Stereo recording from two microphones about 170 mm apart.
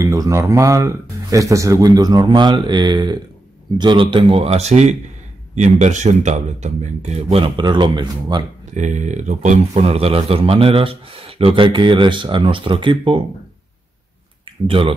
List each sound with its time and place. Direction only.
0.0 s speech: 20° right (ahead or behind)
8.7 s speech: 45° right (ahead or behind)
14.7 s speech: 30° right (ahead or behind)